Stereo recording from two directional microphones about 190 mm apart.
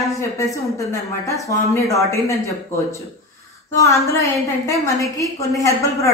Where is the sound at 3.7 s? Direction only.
15° left (ahead or behind).